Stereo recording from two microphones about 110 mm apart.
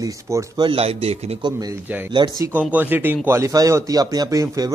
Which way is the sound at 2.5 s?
15° right (ahead or behind).